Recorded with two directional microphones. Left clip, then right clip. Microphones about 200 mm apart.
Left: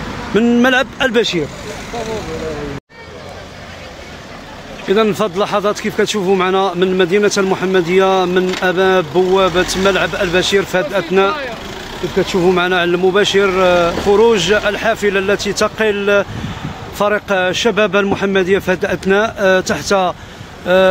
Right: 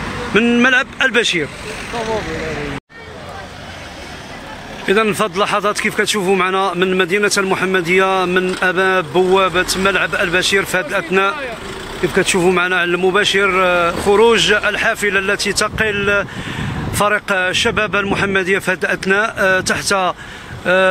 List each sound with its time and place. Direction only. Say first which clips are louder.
0.3 s speech: even; 20° left (ahead or behind)
4.8 s speech: left 1 dB; 5° left (ahead or behind)
12.4 s speech: left 4 dB; centre (ahead or behind)